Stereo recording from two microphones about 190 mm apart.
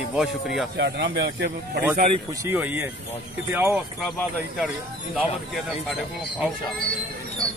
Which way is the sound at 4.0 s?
Centre (ahead or behind).